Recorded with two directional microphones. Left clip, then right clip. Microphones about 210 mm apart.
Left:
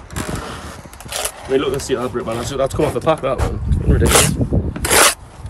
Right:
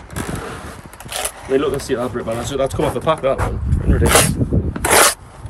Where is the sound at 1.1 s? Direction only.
5° left (ahead or behind).